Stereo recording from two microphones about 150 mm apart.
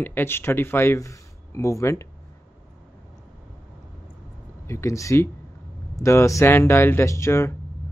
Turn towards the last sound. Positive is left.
turn(degrees=20)  # may be behind; listen again after turning